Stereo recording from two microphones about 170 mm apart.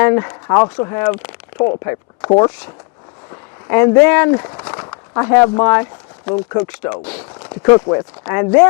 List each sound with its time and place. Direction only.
0.0 s speech: 15° left (ahead or behind)
1.5 s speech: 35° left (ahead or behind)
1.8 s speech: 15° left (ahead or behind)
3.7 s speech: 15° left (ahead or behind)
7.2 s a sound: 25° left (ahead or behind)
7.9 s speech: 20° left (ahead or behind)